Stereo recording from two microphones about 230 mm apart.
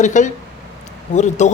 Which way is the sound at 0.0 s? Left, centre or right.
Left.